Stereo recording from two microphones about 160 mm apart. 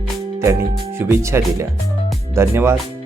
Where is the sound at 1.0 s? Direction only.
15° right (ahead or behind).